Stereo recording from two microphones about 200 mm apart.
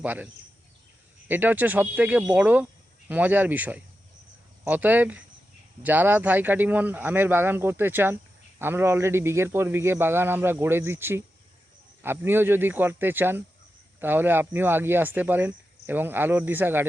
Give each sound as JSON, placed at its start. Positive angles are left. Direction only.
{"t": 0.0, "sound": "speech", "side_deg": -10}
{"t": 1.3, "sound": "speech", "side_deg": -10}